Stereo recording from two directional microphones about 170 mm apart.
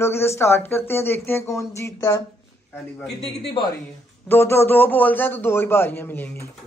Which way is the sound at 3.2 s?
35° left (ahead or behind).